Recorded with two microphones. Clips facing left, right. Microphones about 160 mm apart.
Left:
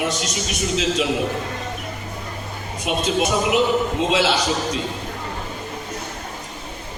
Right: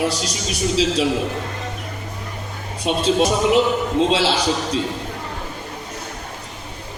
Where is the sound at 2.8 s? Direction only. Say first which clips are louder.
Right 3 dB; 30° right (ahead or behind).